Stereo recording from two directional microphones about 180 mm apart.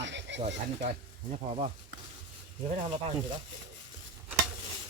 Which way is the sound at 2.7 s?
35° right (ahead or behind).